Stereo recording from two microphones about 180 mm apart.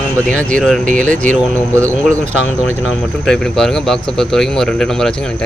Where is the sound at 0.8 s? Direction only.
45° right (ahead or behind).